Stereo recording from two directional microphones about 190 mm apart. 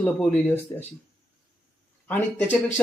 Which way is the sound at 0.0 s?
5° left (ahead or behind).